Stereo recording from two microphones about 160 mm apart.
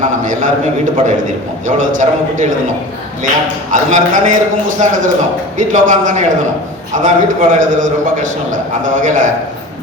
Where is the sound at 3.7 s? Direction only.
50° right (ahead or behind).